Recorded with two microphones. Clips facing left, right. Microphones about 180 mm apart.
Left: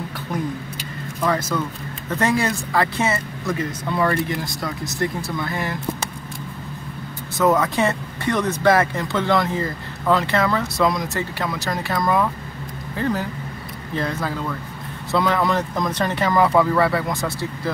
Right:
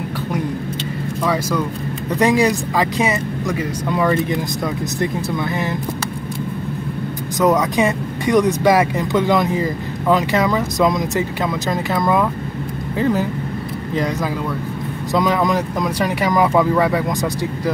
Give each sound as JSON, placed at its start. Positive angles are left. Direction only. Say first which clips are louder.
{"t": 1.2, "sound": "speech", "louder": "right 2 dB", "side_deg": -10}
{"t": 7.3, "sound": "speech", "louder": "right 2 dB", "side_deg": -15}